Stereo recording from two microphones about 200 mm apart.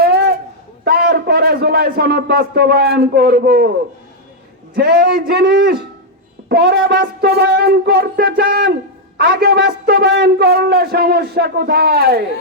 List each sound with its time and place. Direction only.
0.0 s a sound: 50° right (ahead or behind)
0.9 s a man's voice: 50° right (ahead or behind)
4.7 s a man's voice: 50° right (ahead or behind)